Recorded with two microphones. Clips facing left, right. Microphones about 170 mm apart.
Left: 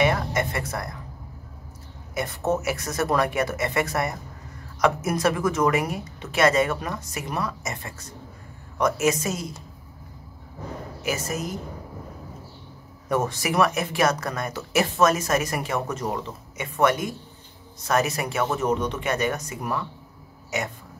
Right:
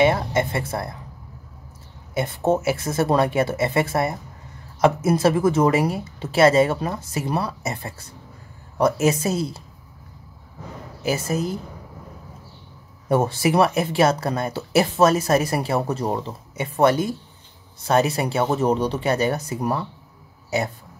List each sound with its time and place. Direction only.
0.0 s speech: 25° right (ahead or behind)
2.1 s speech: 30° right (ahead or behind)
11.0 s speech: 30° right (ahead or behind)
13.1 s speech: 30° right (ahead or behind)